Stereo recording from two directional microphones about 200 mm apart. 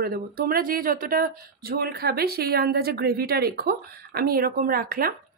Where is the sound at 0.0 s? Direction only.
45° right (ahead or behind).